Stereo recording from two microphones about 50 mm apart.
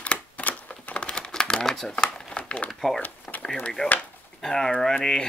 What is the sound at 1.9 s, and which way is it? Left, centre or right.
Crumpling, centre.